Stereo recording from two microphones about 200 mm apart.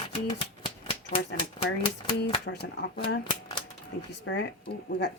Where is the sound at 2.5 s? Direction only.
55° left (ahead or behind).